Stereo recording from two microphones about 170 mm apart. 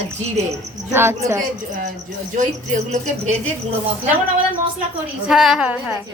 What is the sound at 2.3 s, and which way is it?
Speech, 45° right (ahead or behind).